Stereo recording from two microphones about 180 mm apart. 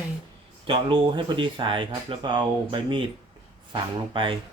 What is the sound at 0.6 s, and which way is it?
Speech, 30° right (ahead or behind).